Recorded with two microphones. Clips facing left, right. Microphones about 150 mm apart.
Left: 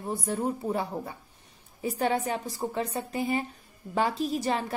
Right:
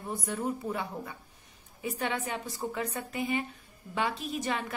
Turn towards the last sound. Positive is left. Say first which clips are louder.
# left 4 dB
turn(degrees=35)  # may be behind; listen again after turning